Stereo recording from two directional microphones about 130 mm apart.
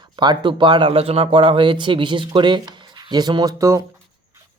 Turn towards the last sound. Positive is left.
turn(degrees=-25)  # may be behind; listen again after turning